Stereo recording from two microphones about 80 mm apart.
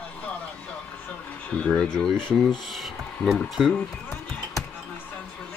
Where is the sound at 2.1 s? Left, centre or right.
Left.